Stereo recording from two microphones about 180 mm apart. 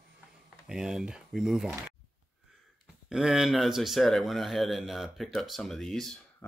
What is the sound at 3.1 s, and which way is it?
A man's voice, 5° right (ahead or behind).